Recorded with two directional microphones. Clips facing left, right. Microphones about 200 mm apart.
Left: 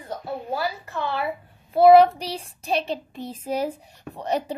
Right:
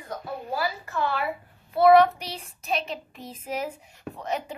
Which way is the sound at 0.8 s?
20° left (ahead or behind).